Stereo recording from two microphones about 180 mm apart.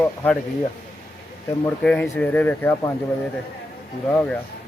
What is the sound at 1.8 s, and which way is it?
Speech, 5° left (ahead or behind).